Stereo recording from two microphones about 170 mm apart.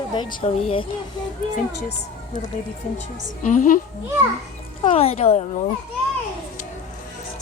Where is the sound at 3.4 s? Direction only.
50° left (ahead or behind).